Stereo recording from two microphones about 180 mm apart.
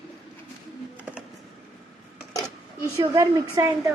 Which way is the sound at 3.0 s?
15° right (ahead or behind).